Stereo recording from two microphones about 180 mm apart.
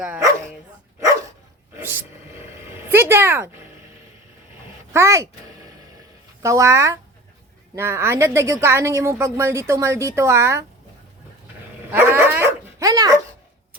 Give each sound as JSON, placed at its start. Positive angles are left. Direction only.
{"t": 1.8, "sound": "a sound", "side_deg": -10}
{"t": 4.9, "sound": "speech", "side_deg": -15}
{"t": 6.4, "sound": "speech", "side_deg": -15}
{"t": 11.9, "sound": "dog", "side_deg": -15}